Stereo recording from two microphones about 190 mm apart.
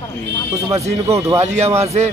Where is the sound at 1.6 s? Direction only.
35° right (ahead or behind).